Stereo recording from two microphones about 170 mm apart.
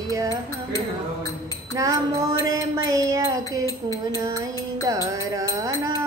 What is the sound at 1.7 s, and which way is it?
Music, 20° right (ahead or behind).